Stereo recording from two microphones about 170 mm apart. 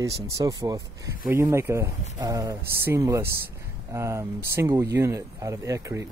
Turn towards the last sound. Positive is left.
turn(degrees=-20)  # may be behind; listen again after turning